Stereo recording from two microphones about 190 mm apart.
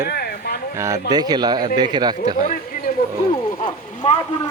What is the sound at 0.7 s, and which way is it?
Speech, 15° right (ahead or behind).